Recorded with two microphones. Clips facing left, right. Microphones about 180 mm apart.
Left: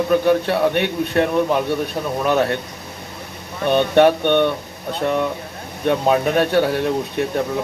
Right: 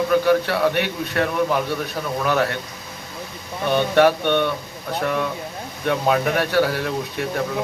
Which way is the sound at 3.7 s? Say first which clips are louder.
Left 3 dB; 20° left (ahead or behind).